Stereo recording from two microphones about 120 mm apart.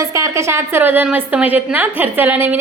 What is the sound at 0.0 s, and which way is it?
A woman's voice, 25° right (ahead or behind).